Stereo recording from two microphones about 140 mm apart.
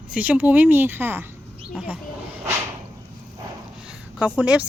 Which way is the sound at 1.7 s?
5° right (ahead or behind).